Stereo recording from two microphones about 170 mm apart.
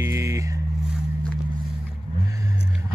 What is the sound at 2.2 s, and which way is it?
Music, 20° right (ahead or behind).